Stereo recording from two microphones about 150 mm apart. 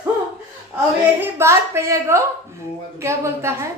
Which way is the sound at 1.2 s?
15° right (ahead or behind).